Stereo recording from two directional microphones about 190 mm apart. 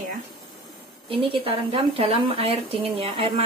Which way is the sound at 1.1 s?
30° right (ahead or behind).